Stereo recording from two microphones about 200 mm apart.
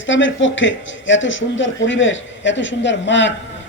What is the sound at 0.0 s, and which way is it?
Speech, 70° left (ahead or behind).